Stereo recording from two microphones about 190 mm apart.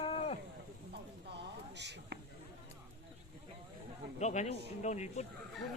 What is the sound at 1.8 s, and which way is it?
Speech, 65° right (ahead or behind).